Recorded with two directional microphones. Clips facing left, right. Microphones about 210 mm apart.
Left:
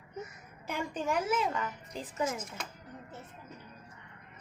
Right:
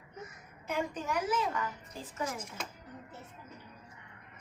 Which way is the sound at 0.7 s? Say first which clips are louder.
Left 1 dB; 25° left (ahead or behind).